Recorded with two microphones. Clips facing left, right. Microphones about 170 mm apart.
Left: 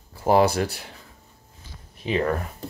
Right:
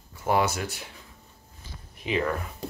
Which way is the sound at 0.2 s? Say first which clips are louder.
Left 6 dB; 35° left (ahead or behind).